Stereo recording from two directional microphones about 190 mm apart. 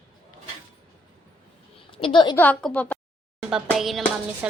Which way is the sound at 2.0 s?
25° left (ahead or behind).